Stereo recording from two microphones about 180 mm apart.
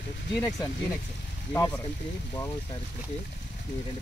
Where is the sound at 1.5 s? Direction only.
20° left (ahead or behind).